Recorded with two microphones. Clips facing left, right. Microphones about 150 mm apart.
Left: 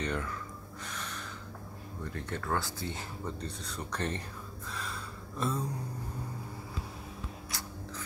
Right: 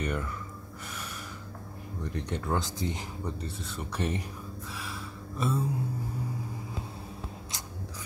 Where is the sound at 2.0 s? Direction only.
20° right (ahead or behind).